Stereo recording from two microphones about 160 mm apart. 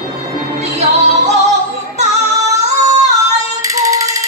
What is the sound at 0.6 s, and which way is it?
Music, 45° right (ahead or behind).